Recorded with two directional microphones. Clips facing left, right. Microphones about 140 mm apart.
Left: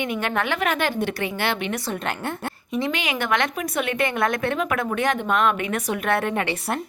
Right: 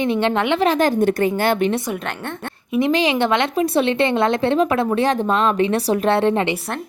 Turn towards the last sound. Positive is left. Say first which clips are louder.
# right 6 dB
turn(degrees=-30)  # may be behind; listen again after turning